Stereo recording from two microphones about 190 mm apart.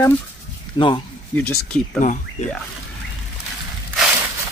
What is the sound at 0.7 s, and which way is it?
Speech, 25° left (ahead or behind).